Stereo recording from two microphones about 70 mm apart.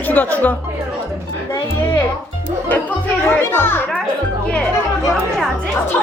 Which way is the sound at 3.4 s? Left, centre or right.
Left.